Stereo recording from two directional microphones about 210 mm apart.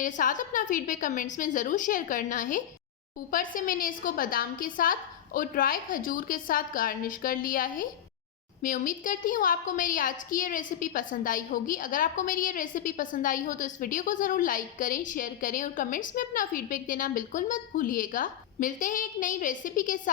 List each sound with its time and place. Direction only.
0.0 s a woman's voice: 40° left (ahead or behind)